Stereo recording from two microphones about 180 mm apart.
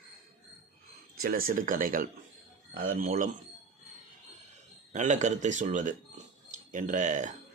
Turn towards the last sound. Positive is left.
turn(degrees=-45)  # may be behind; listen again after turning